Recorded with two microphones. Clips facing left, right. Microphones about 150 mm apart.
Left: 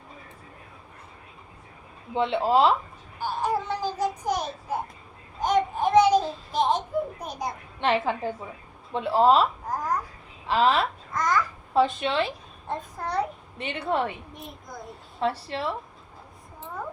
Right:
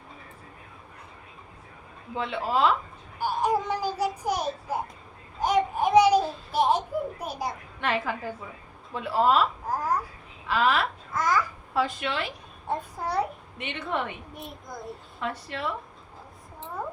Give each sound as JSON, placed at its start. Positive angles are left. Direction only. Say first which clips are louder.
{"t": 2.1, "sound": "speech", "louder": "left 5 dB", "side_deg": 25}
{"t": 3.2, "sound": "child singing", "louder": "right 2 dB", "side_deg": -10}
{"t": 5.4, "sound": "child singing", "louder": "even", "side_deg": -10}
{"t": 7.8, "sound": "speech", "louder": "left 5 dB", "side_deg": 25}
{"t": 9.6, "sound": "babbling", "louder": "right 1 dB", "side_deg": -10}
{"t": 10.4, "sound": "a woman's voice", "louder": "left 2 dB", "side_deg": 30}
{"t": 11.1, "sound": "babbling", "louder": "even", "side_deg": -5}
{"t": 11.7, "sound": "speech", "louder": "left 5 dB", "side_deg": 25}
{"t": 12.6, "sound": "a child's voice", "louder": "right 2 dB", "side_deg": -10}
{"t": 13.6, "sound": "a woman's voice", "louder": "left 4 dB", "side_deg": 35}
{"t": 15.2, "sound": "a woman's voice", "louder": "left 5 dB", "side_deg": 30}